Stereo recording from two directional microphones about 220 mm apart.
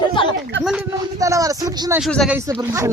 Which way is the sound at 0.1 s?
20° left (ahead or behind).